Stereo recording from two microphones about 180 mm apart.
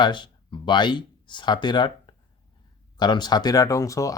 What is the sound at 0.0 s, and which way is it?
Speech, 25° left (ahead or behind).